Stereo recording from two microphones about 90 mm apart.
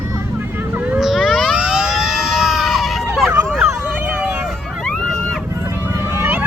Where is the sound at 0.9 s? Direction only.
5° right (ahead or behind).